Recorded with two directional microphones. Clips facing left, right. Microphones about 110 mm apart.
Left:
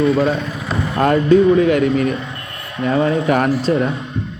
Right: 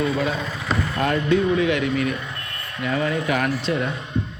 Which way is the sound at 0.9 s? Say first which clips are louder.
Left 9 dB; 45° left (ahead or behind).